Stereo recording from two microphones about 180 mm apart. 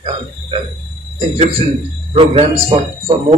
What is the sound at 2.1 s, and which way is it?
Speech, 35° right (ahead or behind).